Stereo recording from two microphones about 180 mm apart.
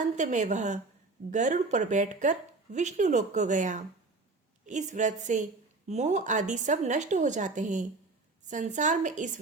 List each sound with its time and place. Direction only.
0.0 s a woman's voice: 40° right (ahead or behind)